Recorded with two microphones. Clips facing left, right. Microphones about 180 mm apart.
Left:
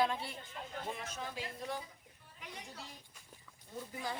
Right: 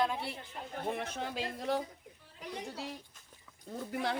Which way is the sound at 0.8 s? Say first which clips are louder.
Right 9 dB; 60° right (ahead or behind).